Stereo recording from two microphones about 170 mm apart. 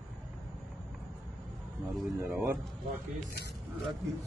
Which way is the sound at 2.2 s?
10° right (ahead or behind).